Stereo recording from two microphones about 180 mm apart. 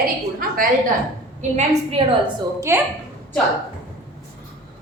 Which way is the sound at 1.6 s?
30° right (ahead or behind).